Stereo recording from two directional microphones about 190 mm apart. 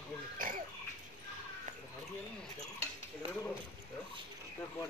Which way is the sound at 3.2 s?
30° right (ahead or behind).